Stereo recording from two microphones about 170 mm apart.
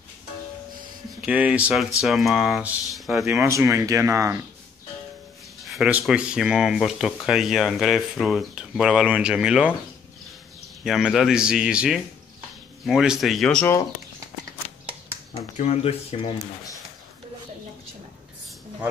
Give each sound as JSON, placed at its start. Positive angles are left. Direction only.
{"t": 1.2, "sound": "speech", "side_deg": -10}
{"t": 3.3, "sound": "speech", "side_deg": -15}
{"t": 5.7, "sound": "speech", "side_deg": -5}
{"t": 10.8, "sound": "speech", "side_deg": 0}
{"t": 15.5, "sound": "speech", "side_deg": 40}